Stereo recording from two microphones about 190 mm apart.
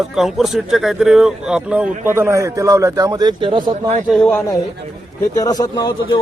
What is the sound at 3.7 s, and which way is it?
Speech, 40° right (ahead or behind).